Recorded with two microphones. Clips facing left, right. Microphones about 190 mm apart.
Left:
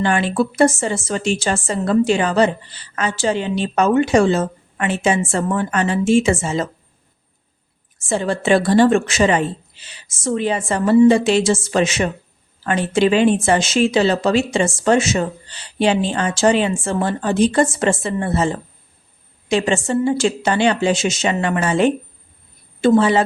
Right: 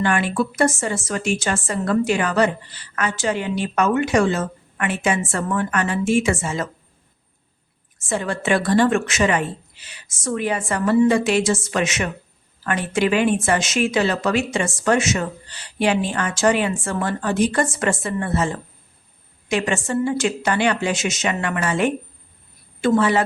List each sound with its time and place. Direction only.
0.0 s a woman's voice: 30° left (ahead or behind)
8.0 s a woman's voice: 30° left (ahead or behind)